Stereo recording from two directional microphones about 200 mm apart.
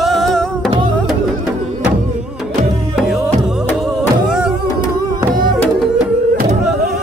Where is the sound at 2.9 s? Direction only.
Centre (ahead or behind).